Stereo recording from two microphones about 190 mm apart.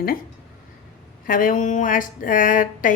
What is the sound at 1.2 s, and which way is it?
Speech, 45° left (ahead or behind).